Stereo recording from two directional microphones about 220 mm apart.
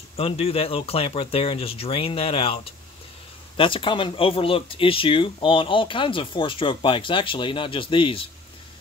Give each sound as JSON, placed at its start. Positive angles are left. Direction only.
{"t": 0.2, "sound": "speech", "side_deg": 25}